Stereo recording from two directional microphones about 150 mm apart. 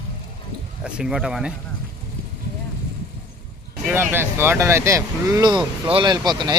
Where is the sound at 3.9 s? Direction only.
15° right (ahead or behind).